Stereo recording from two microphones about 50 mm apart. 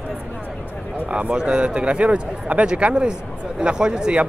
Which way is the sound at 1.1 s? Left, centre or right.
Right.